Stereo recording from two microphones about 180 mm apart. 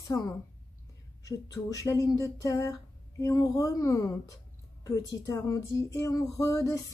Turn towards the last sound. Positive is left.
turn(degrees=20)  # may be behind; listen again after turning